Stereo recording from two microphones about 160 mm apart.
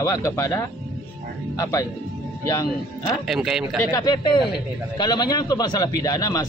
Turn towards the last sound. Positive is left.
turn(degrees=20)  # may be behind; listen again after turning